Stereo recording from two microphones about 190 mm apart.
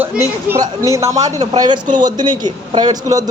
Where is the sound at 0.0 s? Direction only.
10° right (ahead or behind).